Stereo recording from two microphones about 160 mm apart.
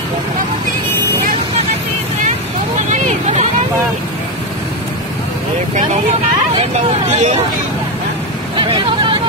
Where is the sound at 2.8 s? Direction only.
50° right (ahead or behind).